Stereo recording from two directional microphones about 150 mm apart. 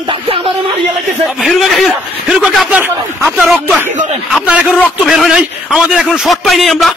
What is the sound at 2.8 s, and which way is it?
Speech, 10° right (ahead or behind).